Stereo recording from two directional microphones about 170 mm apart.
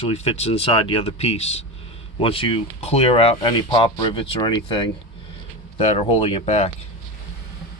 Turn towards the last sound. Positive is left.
turn(degrees=40)  # may be behind; listen again after turning